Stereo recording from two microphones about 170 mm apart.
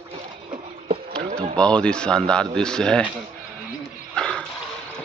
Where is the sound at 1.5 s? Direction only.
5° left (ahead or behind).